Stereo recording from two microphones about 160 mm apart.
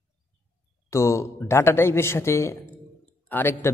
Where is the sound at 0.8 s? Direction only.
20° left (ahead or behind).